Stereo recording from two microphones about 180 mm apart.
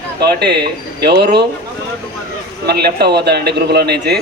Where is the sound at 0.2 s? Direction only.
65° right (ahead or behind).